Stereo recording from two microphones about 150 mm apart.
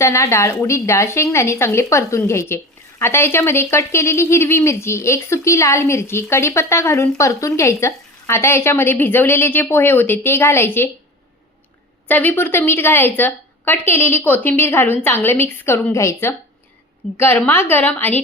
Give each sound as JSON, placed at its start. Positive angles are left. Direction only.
{"t": 0.0, "sound": "a woman's voice", "side_deg": 20}
{"t": 12.0, "sound": "speech", "side_deg": 10}